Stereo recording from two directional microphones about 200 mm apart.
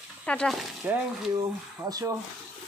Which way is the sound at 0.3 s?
5° left (ahead or behind).